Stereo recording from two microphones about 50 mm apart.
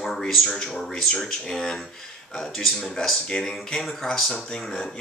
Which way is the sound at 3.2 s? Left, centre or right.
Centre.